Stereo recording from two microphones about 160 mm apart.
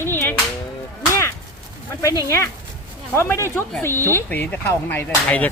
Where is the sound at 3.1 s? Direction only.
15° left (ahead or behind).